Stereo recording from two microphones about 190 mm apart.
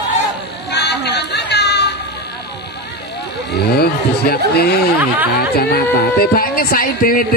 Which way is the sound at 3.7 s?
55° left (ahead or behind).